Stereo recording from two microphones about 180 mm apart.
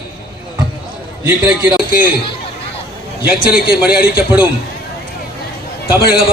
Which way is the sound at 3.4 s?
55° left (ahead or behind).